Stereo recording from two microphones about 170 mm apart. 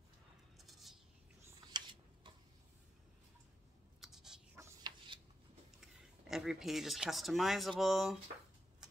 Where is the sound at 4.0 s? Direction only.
Centre (ahead or behind).